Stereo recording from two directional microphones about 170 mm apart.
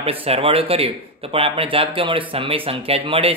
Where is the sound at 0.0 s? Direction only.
35° right (ahead or behind).